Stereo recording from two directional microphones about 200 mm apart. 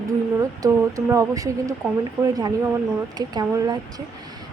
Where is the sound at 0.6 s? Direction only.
15° right (ahead or behind).